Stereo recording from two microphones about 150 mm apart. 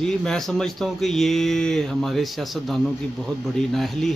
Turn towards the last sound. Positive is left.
turn(degrees=0)  # may be behind; listen again after turning